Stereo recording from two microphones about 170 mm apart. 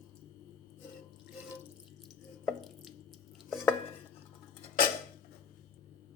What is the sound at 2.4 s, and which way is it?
Drip, centre (ahead or behind).